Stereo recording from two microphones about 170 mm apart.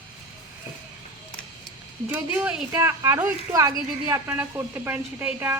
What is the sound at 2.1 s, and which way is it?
A woman's voice, 5° right (ahead or behind).